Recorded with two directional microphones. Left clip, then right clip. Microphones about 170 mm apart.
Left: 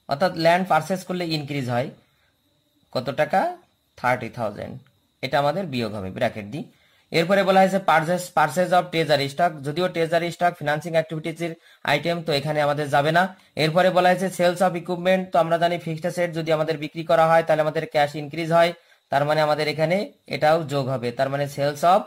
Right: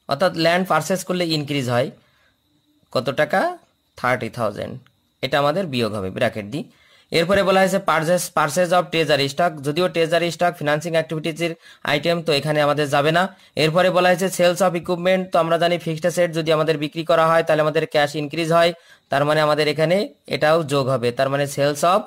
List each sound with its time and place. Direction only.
0.0 s a man's voice: 35° right (ahead or behind)
2.9 s a man's voice: 35° right (ahead or behind)